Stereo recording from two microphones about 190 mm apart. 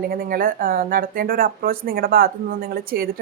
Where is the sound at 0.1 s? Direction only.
50° right (ahead or behind).